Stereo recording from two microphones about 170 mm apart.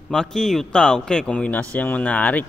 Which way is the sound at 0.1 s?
5° left (ahead or behind).